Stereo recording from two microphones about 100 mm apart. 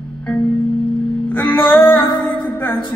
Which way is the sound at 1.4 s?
55° left (ahead or behind).